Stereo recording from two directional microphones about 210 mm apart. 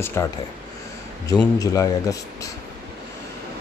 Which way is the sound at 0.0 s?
10° left (ahead or behind).